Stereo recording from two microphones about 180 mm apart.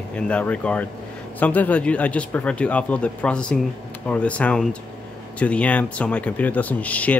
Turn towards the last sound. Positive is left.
turn(degrees=10)  # may be behind; listen again after turning